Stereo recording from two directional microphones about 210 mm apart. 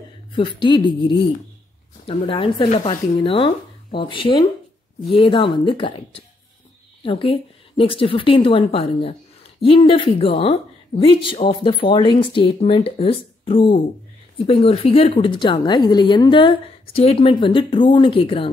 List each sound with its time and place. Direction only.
0.3 s speech: 20° left (ahead or behind)